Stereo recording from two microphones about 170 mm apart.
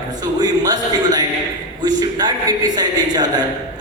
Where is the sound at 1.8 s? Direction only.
25° right (ahead or behind).